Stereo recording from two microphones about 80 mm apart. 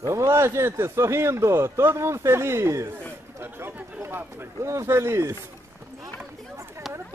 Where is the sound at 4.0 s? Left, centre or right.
Right.